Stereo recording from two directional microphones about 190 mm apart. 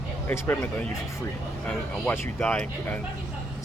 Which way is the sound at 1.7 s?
5° left (ahead or behind).